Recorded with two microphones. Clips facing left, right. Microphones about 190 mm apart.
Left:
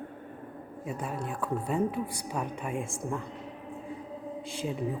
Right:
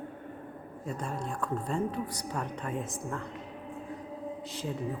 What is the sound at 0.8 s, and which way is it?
A woman's voice, 5° left (ahead or behind).